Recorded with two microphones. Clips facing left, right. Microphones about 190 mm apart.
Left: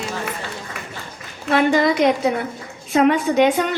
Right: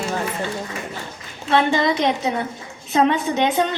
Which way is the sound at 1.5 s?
25° right (ahead or behind).